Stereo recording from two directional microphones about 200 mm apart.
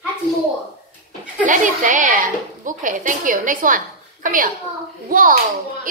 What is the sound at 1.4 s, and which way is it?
A woman's voice, 40° right (ahead or behind).